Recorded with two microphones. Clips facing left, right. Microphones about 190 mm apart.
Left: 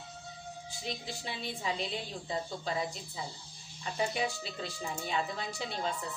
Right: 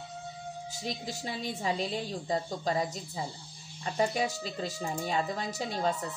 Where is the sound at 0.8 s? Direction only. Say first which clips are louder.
Right 3 dB; 40° right (ahead or behind).